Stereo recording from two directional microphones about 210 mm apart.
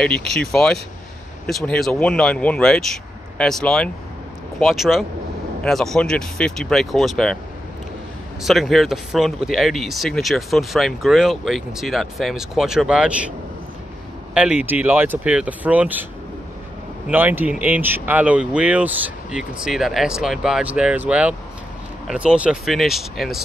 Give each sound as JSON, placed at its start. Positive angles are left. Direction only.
{"t": 0.0, "sound": "speech", "side_deg": 5}
{"t": 8.4, "sound": "speech", "side_deg": 0}
{"t": 14.3, "sound": "speech", "side_deg": -5}
{"t": 17.1, "sound": "speech", "side_deg": -10}